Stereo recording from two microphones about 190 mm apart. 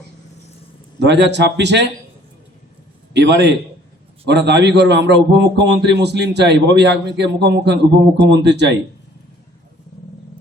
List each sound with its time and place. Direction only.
0.9 s a man's voice: 65° right (ahead or behind)
3.1 s a man's voice: 65° right (ahead or behind)